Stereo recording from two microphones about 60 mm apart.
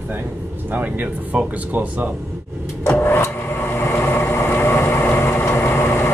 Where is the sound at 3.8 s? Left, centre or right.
Left.